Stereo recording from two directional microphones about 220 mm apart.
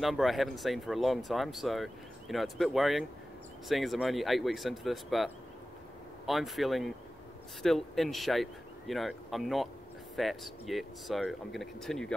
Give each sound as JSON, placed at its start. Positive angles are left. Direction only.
{"t": 0.0, "sound": "speech", "side_deg": 0}